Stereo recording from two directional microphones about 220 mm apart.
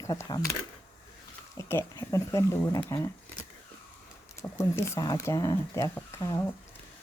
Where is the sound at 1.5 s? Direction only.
10° left (ahead or behind).